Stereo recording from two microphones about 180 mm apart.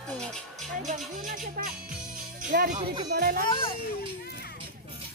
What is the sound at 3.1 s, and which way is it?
Speech, 55° right (ahead or behind).